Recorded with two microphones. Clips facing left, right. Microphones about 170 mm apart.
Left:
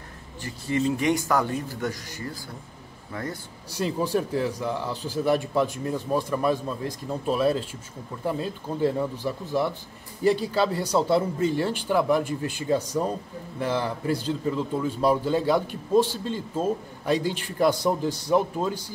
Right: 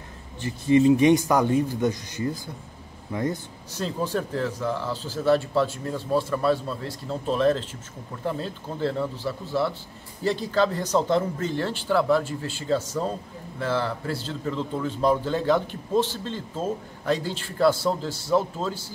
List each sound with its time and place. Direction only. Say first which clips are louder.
0.4 s speech: right 7 dB; 20° right (ahead or behind)
3.7 s a man's voice: left 2 dB; 10° left (ahead or behind)